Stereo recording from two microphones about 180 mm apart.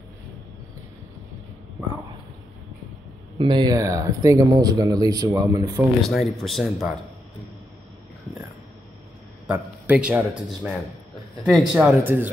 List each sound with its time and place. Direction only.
3.3 s speech: 25° right (ahead or behind)
6.0 s speech: centre (ahead or behind)
9.5 s a man's voice: 10° right (ahead or behind)